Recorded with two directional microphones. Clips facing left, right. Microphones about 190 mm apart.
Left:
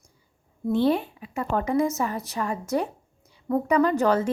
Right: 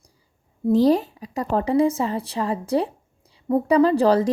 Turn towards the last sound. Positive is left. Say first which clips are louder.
# right 4 dB
turn(degrees=-35)  # may be behind; listen again after turning